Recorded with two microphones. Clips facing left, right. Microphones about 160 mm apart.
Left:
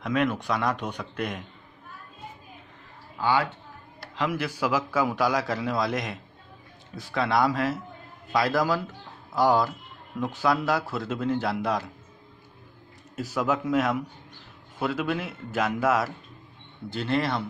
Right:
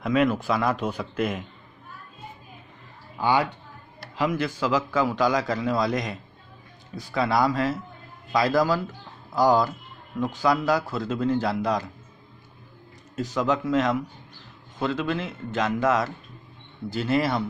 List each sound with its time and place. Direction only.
0.0 s a man's voice: 5° right (ahead or behind)
3.2 s speech: 15° right (ahead or behind)
4.3 s a man's voice: 10° left (ahead or behind)
13.1 s a man's voice: 5° left (ahead or behind)
16.9 s a man's voice: 5° right (ahead or behind)